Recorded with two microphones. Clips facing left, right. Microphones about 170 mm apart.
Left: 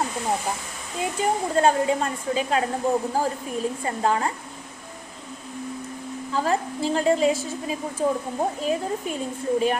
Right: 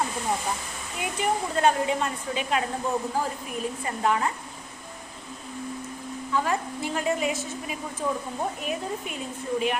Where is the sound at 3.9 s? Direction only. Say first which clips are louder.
Left 1 dB; 30° left (ahead or behind).